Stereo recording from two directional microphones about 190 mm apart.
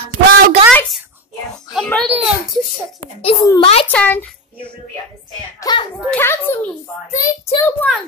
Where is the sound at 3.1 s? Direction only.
25° left (ahead or behind).